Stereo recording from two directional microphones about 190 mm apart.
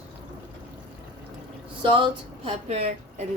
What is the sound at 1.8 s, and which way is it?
A woman's voice, 25° right (ahead or behind).